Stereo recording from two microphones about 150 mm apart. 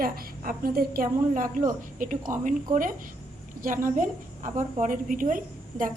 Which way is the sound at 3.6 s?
65° right (ahead or behind).